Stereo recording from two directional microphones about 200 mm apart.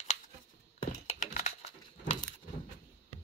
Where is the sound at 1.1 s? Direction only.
40° left (ahead or behind).